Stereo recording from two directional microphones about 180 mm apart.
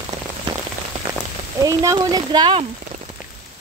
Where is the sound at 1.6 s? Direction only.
20° right (ahead or behind).